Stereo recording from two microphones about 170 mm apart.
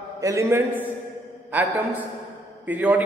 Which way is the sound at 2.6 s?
10° right (ahead or behind).